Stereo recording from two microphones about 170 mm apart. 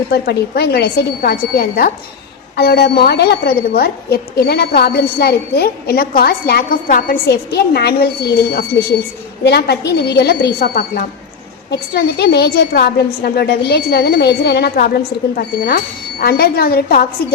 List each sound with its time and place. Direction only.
0.1 s a woman's voice: 70° left (ahead or behind)
2.6 s a woman's voice: 75° left (ahead or behind)
11.7 s a woman's voice: 75° left (ahead or behind)